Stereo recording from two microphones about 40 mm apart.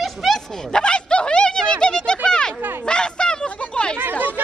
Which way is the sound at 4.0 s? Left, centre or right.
Right.